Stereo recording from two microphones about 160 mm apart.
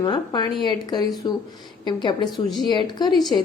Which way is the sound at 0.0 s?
30° left (ahead or behind).